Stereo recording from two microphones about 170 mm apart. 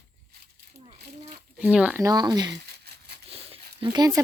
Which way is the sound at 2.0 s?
25° right (ahead or behind).